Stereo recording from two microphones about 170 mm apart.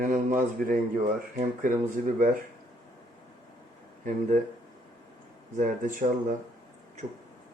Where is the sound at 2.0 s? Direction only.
55° right (ahead or behind).